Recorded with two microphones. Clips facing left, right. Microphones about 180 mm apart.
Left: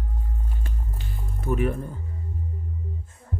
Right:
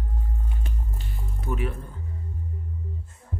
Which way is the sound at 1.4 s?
50° left (ahead or behind).